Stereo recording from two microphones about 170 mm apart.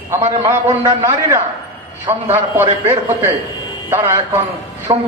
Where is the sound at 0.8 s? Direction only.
20° right (ahead or behind).